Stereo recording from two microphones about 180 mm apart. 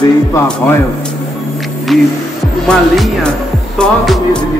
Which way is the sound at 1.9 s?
Centre (ahead or behind).